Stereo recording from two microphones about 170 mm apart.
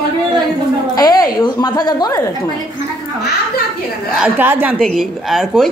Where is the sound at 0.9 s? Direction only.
25° left (ahead or behind).